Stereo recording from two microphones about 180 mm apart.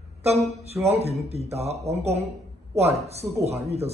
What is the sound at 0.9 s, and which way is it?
A man's voice, 35° right (ahead or behind).